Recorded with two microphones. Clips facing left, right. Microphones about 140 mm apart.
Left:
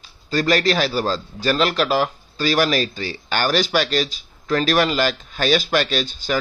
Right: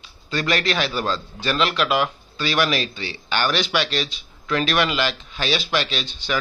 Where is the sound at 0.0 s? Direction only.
40° left (ahead or behind).